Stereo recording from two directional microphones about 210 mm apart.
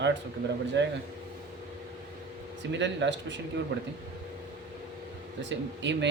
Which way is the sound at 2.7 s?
55° right (ahead or behind).